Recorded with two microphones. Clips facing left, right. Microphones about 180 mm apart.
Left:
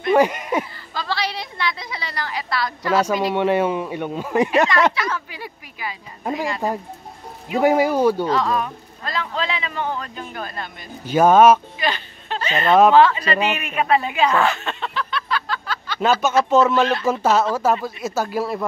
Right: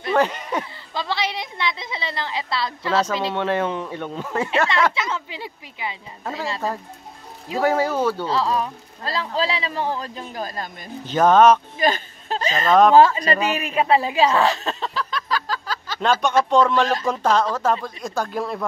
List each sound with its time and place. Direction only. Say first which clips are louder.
0.1 s speech: left 4 dB; 10° left (ahead or behind)
0.9 s a woman's voice: even; 20° right (ahead or behind)
3.3 s speech: left 4 dB; 10° left (ahead or behind)
4.9 s a woman's voice: left 1 dB; 20° right (ahead or behind)
6.2 s speech: left 4 dB; 15° left (ahead or behind)
7.5 s speech: left 3 dB; 15° left (ahead or behind)
8.3 s a man's voice: left 1 dB; 30° right (ahead or behind)
11.1 s speech: left 2 dB; 10° left (ahead or behind)
11.8 s speech: right 3 dB; 40° right (ahead or behind)
16.0 s speech: left 1 dB; 5° left (ahead or behind)